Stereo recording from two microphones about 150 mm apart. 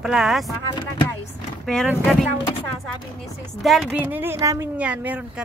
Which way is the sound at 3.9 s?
15° right (ahead or behind).